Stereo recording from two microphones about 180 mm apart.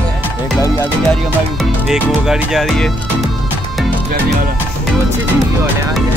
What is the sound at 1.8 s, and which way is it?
Speech, 5° right (ahead or behind).